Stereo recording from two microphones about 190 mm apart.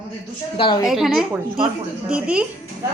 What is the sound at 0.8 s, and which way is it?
A woman's voice, centre (ahead or behind).